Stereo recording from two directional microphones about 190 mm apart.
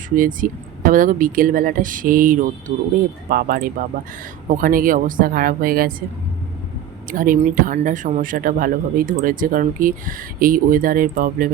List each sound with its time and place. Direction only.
0.2 s speech: 45° right (ahead or behind)
7.1 s speech: 45° right (ahead or behind)